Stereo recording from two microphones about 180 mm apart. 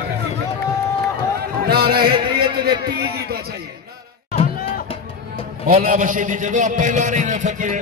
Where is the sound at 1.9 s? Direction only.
25° right (ahead or behind).